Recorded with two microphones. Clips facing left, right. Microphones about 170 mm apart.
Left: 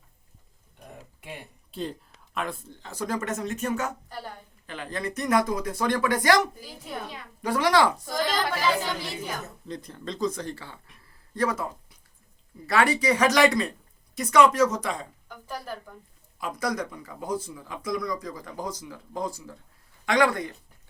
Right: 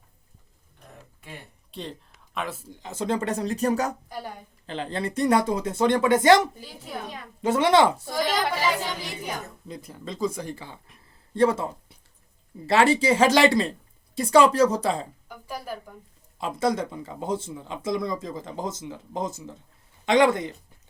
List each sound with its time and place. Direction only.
1.7 s speech: centre (ahead or behind)
2.7 s speech: 20° right (ahead or behind); by 3.9 s 35° right (ahead or behind)
4.1 s a woman's voice: 10° right (ahead or behind)
4.6 s speech: 30° right (ahead or behind)
8.1 s a woman's voice: 10° right (ahead or behind)
11.3 s speech: 25° right (ahead or behind)
15.3 s a woman's voice: 10° right (ahead or behind)
16.4 s speech: 25° right (ahead or behind)